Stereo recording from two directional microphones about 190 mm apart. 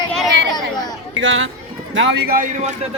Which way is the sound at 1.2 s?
85° right.